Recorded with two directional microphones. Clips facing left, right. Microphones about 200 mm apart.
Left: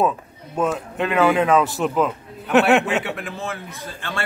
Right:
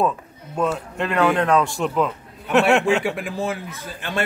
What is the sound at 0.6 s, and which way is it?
A man's voice, centre (ahead or behind).